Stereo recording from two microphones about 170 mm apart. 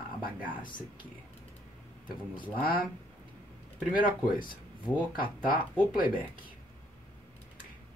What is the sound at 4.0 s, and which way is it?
Speech, 55° left (ahead or behind).